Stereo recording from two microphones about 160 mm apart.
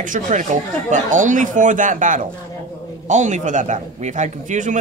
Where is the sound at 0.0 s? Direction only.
55° right (ahead or behind).